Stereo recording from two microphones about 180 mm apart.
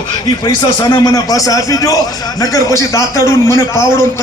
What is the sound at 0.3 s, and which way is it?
A man's voice, 20° left (ahead or behind).